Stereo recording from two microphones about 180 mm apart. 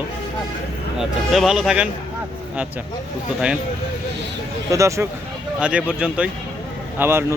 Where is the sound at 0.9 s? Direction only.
Centre (ahead or behind).